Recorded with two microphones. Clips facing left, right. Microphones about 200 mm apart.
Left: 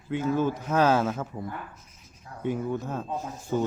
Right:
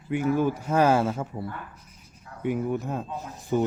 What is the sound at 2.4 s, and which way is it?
Speech, 15° right (ahead or behind).